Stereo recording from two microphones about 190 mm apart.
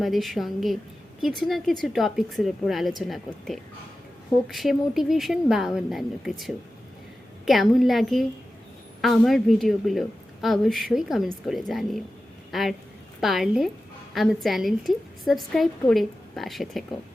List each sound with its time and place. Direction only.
0.0 s a woman's voice: centre (ahead or behind)
7.4 s a woman's voice: centre (ahead or behind)